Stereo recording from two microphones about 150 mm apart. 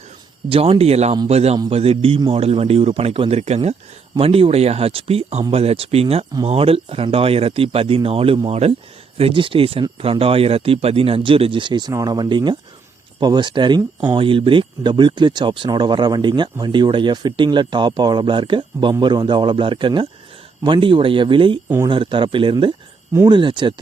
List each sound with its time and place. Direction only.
0.4 s a man's voice: 40° right (ahead or behind)